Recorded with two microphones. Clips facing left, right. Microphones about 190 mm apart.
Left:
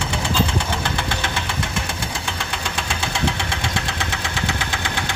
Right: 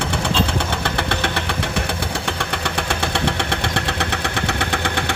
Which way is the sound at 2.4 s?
60° right (ahead or behind).